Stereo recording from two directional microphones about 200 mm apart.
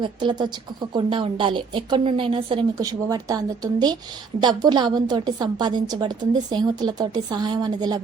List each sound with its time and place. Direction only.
0.0 s a woman's voice: 25° right (ahead or behind)